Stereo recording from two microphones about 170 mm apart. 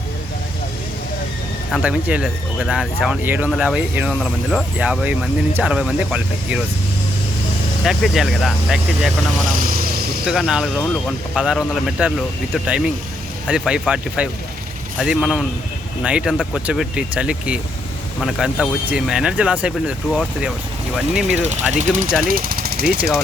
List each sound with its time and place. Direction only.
1.7 s speech: 5° right (ahead or behind)
7.9 s speech: centre (ahead or behind)
10.2 s speech: centre (ahead or behind)
21.4 s speech: 45° right (ahead or behind)
22.3 s speech: 55° right (ahead or behind)